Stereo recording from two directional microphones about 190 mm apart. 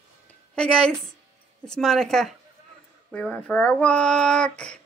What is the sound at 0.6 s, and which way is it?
Speech, 5° left (ahead or behind).